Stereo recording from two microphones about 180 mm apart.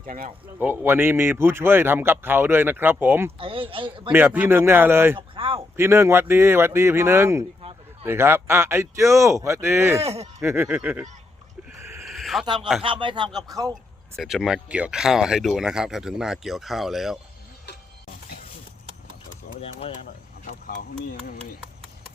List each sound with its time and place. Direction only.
0.0 s speech: 50° right (ahead or behind)
0.6 s speech: 10° right (ahead or behind)
3.3 s a man's voice: 30° right (ahead or behind)
4.1 s speech: 10° right (ahead or behind)
5.3 s speech: 30° right (ahead or behind)
5.7 s speech: 15° right (ahead or behind)
10.0 s speech: 35° right (ahead or behind)
10.4 s speech: 10° right (ahead or behind)
12.0 s a sound: centre (ahead or behind)
12.8 s a man's voice: 30° right (ahead or behind)
14.2 s speech: centre (ahead or behind)
20.4 s a sound: 50° left (ahead or behind)